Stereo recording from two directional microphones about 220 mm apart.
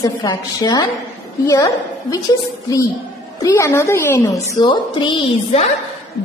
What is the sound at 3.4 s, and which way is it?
A woman's voice, 15° left (ahead or behind).